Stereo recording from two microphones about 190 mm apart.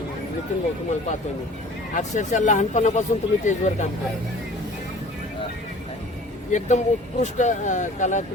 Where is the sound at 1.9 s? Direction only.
40° left (ahead or behind).